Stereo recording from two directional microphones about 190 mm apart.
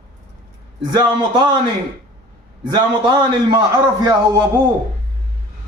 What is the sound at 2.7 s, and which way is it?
Speech, 25° right (ahead or behind).